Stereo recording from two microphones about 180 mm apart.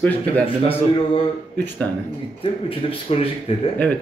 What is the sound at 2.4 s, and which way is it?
Speech, 30° left (ahead or behind).